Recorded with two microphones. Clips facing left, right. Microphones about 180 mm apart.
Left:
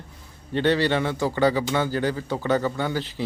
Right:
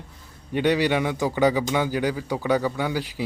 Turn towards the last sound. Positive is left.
turn(degrees=-10)  # may be behind; listen again after turning